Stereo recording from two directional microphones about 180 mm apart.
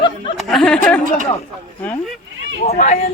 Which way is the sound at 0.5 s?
5° left (ahead or behind).